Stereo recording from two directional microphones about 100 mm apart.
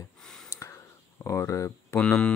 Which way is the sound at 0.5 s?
30° left (ahead or behind).